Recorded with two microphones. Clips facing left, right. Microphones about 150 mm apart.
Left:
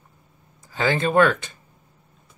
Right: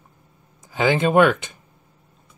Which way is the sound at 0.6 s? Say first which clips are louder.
Right 3 dB; 15° right (ahead or behind).